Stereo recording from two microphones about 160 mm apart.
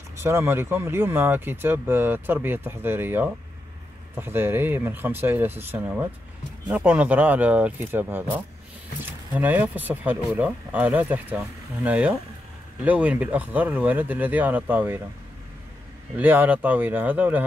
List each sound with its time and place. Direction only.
0.2 s speech: 15° right (ahead or behind)
9.4 s speech: 10° right (ahead or behind)
16.2 s speech: 10° right (ahead or behind)